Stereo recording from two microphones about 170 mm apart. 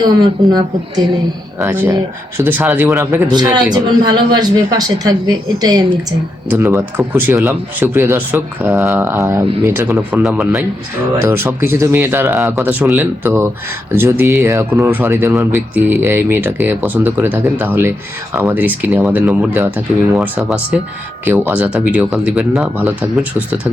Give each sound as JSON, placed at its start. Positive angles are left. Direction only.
{"t": 1.6, "sound": "a man's voice", "side_deg": -15}
{"t": 11.3, "sound": "speech", "side_deg": -15}